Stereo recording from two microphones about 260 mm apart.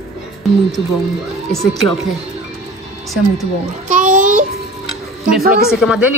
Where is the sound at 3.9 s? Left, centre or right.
Right.